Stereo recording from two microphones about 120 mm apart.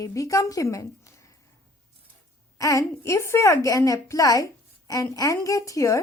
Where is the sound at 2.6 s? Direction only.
30° left (ahead or behind).